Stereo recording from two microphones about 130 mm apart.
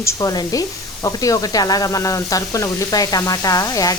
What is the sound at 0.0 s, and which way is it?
Speech, 25° left (ahead or behind).